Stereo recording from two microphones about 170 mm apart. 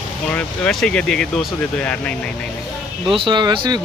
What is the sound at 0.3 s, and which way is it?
Speech, 5° left (ahead or behind).